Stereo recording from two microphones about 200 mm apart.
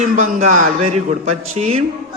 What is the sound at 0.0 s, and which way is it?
A man's voice, 35° right (ahead or behind).